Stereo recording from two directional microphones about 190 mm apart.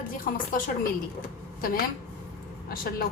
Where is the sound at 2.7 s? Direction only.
50° left (ahead or behind).